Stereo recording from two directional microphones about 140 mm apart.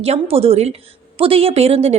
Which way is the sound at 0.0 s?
45° right (ahead or behind).